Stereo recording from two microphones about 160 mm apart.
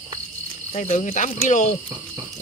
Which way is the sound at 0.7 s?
50° left (ahead or behind).